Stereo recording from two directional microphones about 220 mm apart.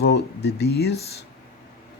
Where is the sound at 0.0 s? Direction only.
50° left (ahead or behind).